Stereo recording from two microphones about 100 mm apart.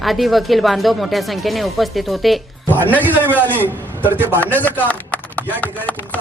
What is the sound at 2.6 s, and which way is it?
Speech, 20° left (ahead or behind).